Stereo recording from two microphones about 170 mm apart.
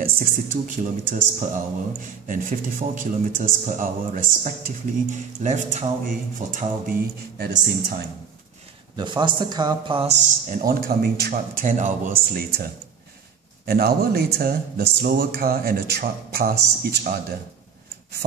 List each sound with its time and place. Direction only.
0.0 s a man's voice: 50° right (ahead or behind)
6.5 s speech: 60° right (ahead or behind)
8.9 s a man's voice: 25° right (ahead or behind); by 11.4 s 60° right (ahead or behind)
11.6 s a man's voice: 45° right (ahead or behind)